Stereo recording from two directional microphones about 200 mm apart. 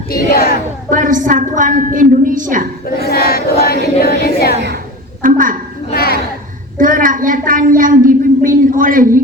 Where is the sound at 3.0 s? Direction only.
50° left (ahead or behind).